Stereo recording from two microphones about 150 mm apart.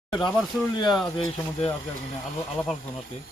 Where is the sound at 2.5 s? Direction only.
10° left (ahead or behind).